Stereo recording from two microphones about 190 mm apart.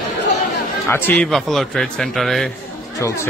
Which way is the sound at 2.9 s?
15° left (ahead or behind).